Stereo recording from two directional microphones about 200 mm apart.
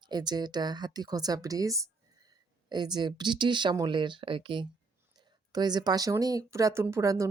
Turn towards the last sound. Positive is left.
turn(degrees=-15)  # may be behind; listen again after turning